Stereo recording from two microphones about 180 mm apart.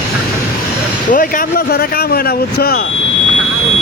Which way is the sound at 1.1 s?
50° left (ahead or behind).